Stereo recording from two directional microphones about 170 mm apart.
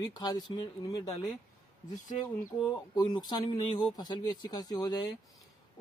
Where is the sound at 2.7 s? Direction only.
25° left (ahead or behind).